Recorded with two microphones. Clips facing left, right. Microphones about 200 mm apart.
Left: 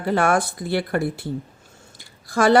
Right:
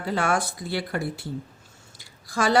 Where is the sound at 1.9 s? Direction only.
55° left (ahead or behind).